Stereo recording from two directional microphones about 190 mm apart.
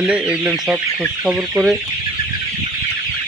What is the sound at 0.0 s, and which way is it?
Speech, 5° right (ahead or behind).